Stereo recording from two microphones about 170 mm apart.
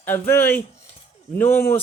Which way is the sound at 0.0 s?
10° left (ahead or behind).